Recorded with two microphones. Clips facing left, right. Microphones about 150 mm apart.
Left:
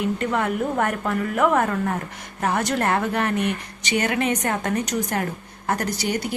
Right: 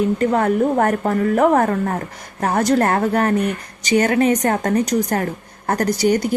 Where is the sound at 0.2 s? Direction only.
40° right (ahead or behind).